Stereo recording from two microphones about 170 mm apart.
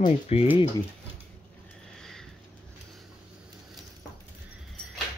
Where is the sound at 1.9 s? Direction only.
5° left (ahead or behind).